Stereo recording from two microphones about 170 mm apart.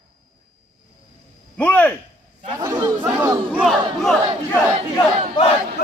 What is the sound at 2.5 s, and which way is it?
Chatter, 20° right (ahead or behind).